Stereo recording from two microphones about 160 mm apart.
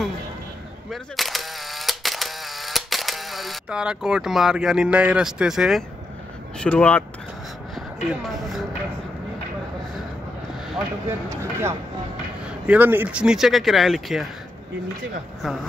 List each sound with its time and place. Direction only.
0.8 s camera: centre (ahead or behind)
6.6 s speech: 5° left (ahead or behind)
11.1 s speech: 15° right (ahead or behind); by 14.3 s centre (ahead or behind)